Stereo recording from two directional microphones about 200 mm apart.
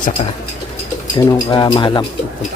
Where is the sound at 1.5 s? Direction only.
20° left (ahead or behind).